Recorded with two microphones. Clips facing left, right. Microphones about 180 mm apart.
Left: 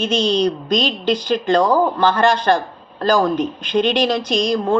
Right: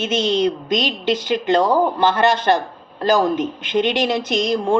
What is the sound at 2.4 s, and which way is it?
A woman's voice, 20° right (ahead or behind).